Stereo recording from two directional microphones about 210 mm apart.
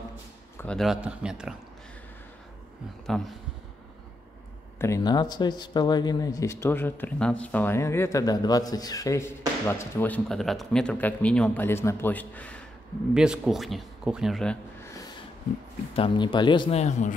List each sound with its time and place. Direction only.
0.6 s speech: 5° left (ahead or behind)
3.1 s speech: centre (ahead or behind)
4.7 s speech: 15° left (ahead or behind)
15.9 s speech: 25° left (ahead or behind)